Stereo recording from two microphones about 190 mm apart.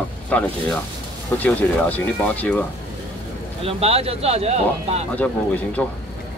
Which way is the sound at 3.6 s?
30° right (ahead or behind).